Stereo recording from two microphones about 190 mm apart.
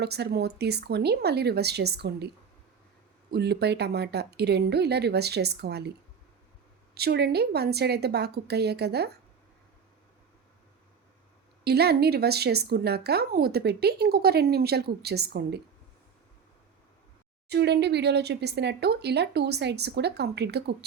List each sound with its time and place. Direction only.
0.0 s a woman's voice: 60° right (ahead or behind)
3.3 s a woman's voice: 60° right (ahead or behind)
6.9 s a woman's voice: 60° right (ahead or behind)
11.6 s a woman's voice: 60° right (ahead or behind)
17.5 s a woman's voice: 60° right (ahead or behind)